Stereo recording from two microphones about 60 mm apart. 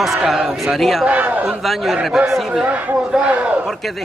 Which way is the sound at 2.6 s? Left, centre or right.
Right.